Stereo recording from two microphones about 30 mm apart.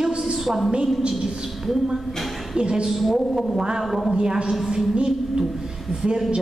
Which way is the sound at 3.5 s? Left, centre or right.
Right.